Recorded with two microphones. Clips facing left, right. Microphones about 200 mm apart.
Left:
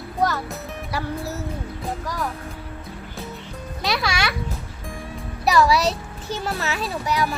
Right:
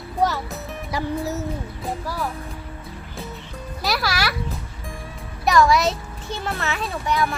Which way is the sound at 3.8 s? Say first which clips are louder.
Even; 5° right (ahead or behind).